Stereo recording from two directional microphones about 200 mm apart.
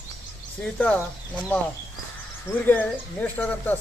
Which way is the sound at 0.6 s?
5° left (ahead or behind).